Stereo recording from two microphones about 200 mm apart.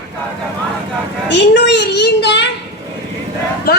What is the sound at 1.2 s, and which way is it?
A child's voice, 60° left (ahead or behind).